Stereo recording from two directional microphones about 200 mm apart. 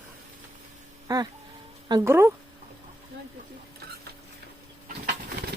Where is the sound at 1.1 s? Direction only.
20° right (ahead or behind).